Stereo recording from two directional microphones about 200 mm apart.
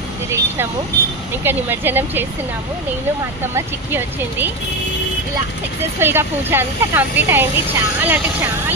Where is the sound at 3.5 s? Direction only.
10° right (ahead or behind).